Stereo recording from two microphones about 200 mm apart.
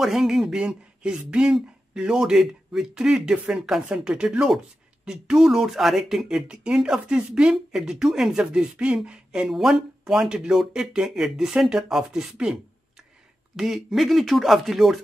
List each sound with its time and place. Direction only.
0.0 s speech: centre (ahead or behind)